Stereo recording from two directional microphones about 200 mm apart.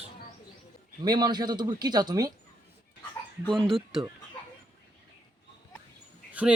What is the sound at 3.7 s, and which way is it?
Speech, centre (ahead or behind).